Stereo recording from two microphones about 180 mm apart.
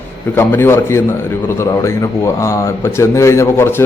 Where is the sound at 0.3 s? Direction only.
15° left (ahead or behind).